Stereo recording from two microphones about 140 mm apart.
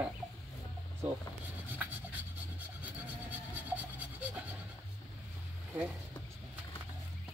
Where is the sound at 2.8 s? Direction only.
10° right (ahead or behind).